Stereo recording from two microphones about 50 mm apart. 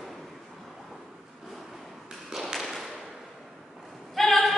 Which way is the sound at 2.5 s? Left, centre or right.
Centre.